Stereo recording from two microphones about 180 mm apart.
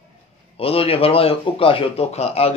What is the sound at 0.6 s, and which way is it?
Speech, 30° left (ahead or behind).